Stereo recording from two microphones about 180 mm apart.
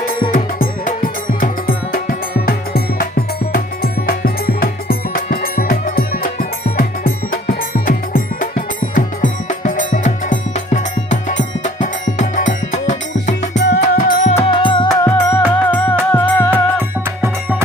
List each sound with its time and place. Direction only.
0.3 s music: 50° left (ahead or behind)
7.7 s music: 50° left (ahead or behind)
13.5 s music: 75° left (ahead or behind)
13.8 s music: 45° left (ahead or behind); by 14.8 s 25° left (ahead or behind)
15.0 s music: 10° left (ahead or behind)